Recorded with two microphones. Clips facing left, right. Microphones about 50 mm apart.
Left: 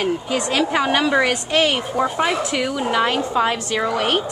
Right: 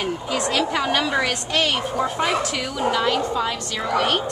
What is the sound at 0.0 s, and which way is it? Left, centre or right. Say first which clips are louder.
A woman's voice: left 3 dB; centre.